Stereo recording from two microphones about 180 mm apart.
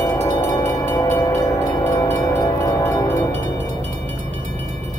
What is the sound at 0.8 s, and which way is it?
Music, 15° left (ahead or behind).